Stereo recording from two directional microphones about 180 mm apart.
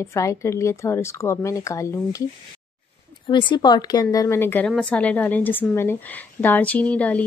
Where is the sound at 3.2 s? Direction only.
25° left (ahead or behind).